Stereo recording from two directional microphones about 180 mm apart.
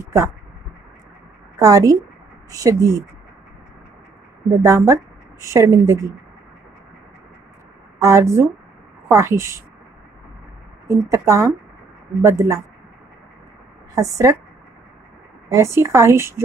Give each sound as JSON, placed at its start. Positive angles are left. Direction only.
{"t": 0.0, "sound": "a sound", "side_deg": -15}
{"t": 1.6, "sound": "a woman's voice", "side_deg": -20}
{"t": 4.5, "sound": "speech", "side_deg": -20}
{"t": 8.0, "sound": "speech", "side_deg": -15}
{"t": 10.9, "sound": "speech", "side_deg": -15}
{"t": 13.9, "sound": "a woman's voice", "side_deg": -20}
{"t": 15.5, "sound": "speech", "side_deg": -15}